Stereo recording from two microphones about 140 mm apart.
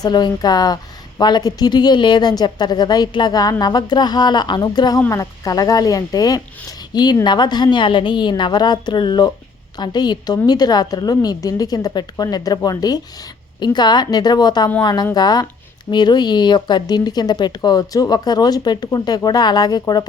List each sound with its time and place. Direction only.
0.0 s a woman's voice: 30° left (ahead or behind)